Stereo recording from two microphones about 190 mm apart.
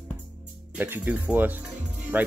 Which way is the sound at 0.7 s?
10° right (ahead or behind).